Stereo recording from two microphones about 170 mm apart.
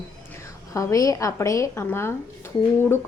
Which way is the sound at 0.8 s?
20° left (ahead or behind).